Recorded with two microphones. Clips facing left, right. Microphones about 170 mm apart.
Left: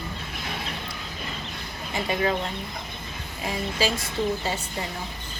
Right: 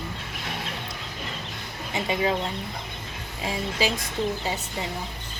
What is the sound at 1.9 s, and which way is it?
Speech, 20° right (ahead or behind).